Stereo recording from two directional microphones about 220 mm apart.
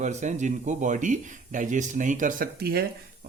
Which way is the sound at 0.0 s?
35° right (ahead or behind).